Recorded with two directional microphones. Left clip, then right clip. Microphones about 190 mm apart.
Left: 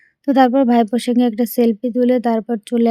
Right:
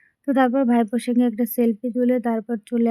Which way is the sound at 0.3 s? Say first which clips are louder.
Left 6 dB; 35° left (ahead or behind).